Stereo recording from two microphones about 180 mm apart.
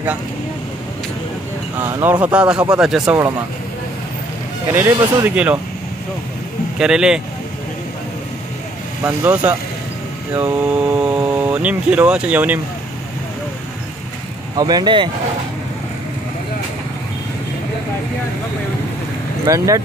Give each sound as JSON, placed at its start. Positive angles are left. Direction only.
{"t": 1.9, "sound": "speech", "side_deg": -15}
{"t": 4.7, "sound": "speech", "side_deg": -10}
{"t": 6.8, "sound": "speech", "side_deg": -5}
{"t": 9.0, "sound": "speech", "side_deg": -15}
{"t": 14.6, "sound": "speech", "side_deg": -20}
{"t": 19.4, "sound": "speech", "side_deg": -20}